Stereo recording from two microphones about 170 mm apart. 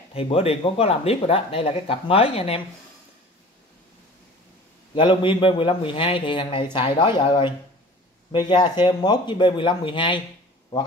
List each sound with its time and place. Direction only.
0.1 s speech: 35° left (ahead or behind)
4.9 s a man's voice: 30° left (ahead or behind)